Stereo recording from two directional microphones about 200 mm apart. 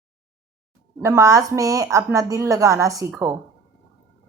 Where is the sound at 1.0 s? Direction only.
15° right (ahead or behind).